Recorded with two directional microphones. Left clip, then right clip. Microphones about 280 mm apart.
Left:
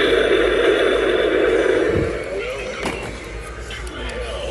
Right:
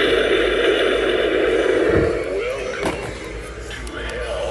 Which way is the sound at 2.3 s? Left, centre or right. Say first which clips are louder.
Right 2 dB; right.